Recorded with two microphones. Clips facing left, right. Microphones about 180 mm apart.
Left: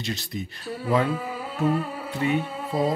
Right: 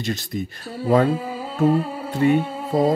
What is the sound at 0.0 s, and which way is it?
Speech, 50° right (ahead or behind).